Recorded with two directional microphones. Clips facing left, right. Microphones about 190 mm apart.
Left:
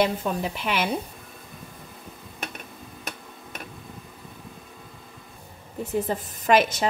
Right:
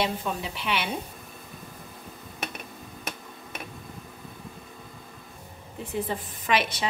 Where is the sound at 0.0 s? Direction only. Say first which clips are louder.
Left 5 dB; 45° left (ahead or behind).